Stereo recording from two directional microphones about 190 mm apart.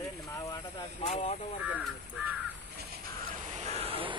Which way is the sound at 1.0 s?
35° left (ahead or behind).